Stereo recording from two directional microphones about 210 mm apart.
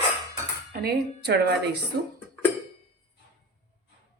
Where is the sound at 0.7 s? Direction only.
45° right (ahead or behind).